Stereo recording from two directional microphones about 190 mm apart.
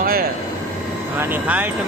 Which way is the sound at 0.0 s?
50° right (ahead or behind).